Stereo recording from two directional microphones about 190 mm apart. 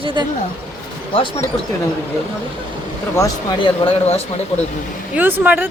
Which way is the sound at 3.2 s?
20° left (ahead or behind).